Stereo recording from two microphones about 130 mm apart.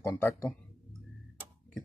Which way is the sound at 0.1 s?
20° left (ahead or behind).